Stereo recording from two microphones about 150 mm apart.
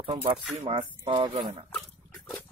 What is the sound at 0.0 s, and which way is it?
Speech, 35° right (ahead or behind).